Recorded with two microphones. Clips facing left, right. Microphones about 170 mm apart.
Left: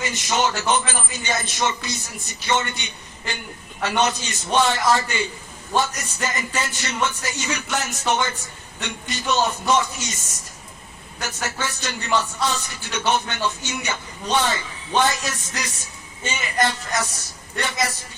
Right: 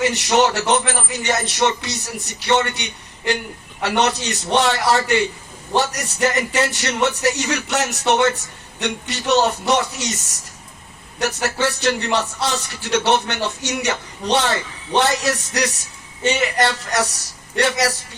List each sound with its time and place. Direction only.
0.0 s speech: 75° right (ahead or behind)
11.2 s speech: 75° right (ahead or behind)